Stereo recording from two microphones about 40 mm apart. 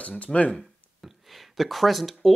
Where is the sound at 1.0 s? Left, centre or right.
Centre.